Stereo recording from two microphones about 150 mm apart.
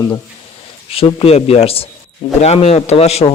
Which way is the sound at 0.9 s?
40° left (ahead or behind).